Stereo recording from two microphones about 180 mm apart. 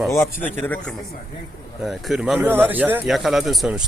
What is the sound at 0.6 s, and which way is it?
Speech, 10° left (ahead or behind).